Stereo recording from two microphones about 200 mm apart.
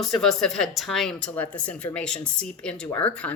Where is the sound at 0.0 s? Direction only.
Centre (ahead or behind).